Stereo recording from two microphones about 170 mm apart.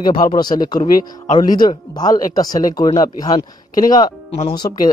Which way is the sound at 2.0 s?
20° left (ahead or behind).